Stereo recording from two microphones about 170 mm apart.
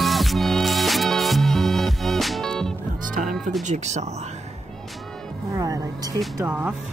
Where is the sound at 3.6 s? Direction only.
45° right (ahead or behind).